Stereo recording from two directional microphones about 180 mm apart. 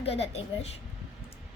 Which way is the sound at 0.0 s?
35° left (ahead or behind).